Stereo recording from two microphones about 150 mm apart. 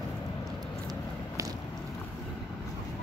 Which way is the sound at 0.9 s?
25° right (ahead or behind).